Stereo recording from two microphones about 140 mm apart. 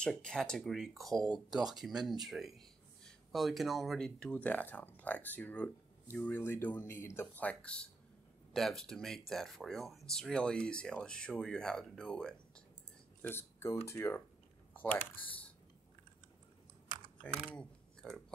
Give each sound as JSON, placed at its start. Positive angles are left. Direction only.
{"t": 0.0, "sound": "speech", "side_deg": 5}
{"t": 14.7, "sound": "typing", "side_deg": 10}
{"t": 17.2, "sound": "speech", "side_deg": 5}
{"t": 17.6, "sound": "a sound", "side_deg": 0}